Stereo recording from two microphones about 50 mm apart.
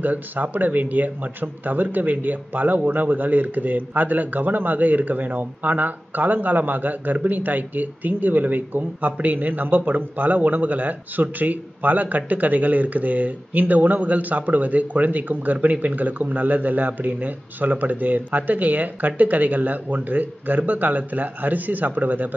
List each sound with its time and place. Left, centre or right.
0.0 s speech: right